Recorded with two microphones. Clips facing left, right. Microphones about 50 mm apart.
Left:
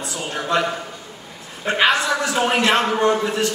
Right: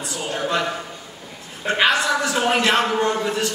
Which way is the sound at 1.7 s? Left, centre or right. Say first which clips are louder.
Left 1 dB; centre.